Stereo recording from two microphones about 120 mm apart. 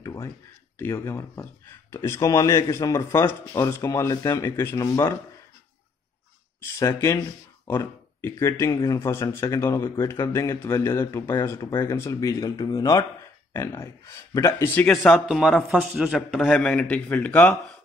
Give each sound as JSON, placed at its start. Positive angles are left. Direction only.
{"t": 0.0, "sound": "a sound", "side_deg": 25}
{"t": 0.7, "sound": "speech", "side_deg": 20}
{"t": 6.8, "sound": "speech", "side_deg": 25}
{"t": 15.1, "sound": "a man's voice", "side_deg": -5}